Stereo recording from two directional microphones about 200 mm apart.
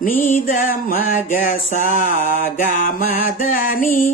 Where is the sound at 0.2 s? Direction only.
40° left (ahead or behind).